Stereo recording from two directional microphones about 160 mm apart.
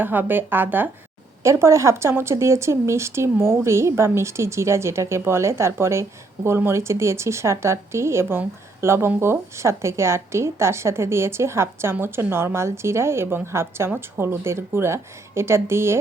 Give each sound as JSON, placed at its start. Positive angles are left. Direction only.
{"t": 0.0, "sound": "a woman's voice", "side_deg": -10}